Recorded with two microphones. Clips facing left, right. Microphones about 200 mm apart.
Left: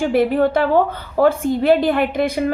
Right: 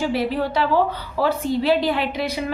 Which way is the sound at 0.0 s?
50° left (ahead or behind).